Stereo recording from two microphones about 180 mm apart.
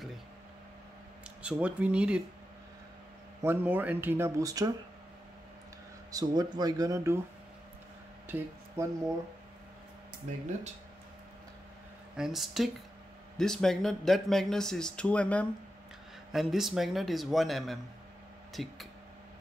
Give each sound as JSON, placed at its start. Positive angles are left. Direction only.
{"t": 1.4, "sound": "speech", "side_deg": -5}
{"t": 3.4, "sound": "speech", "side_deg": -10}
{"t": 6.1, "sound": "speech", "side_deg": -20}
{"t": 8.3, "sound": "speech", "side_deg": -10}
{"t": 10.3, "sound": "speech", "side_deg": -40}
{"t": 12.2, "sound": "speech", "side_deg": 0}